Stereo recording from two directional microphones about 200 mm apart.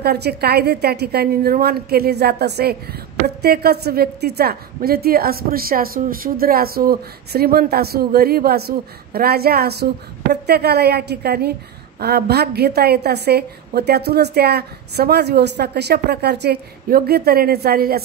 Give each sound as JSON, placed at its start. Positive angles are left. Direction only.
{"t": 0.0, "sound": "a woman's voice", "side_deg": -55}